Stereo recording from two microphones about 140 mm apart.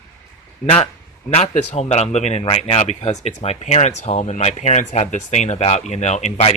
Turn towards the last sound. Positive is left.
turn(degrees=55)  # may be behind; listen again after turning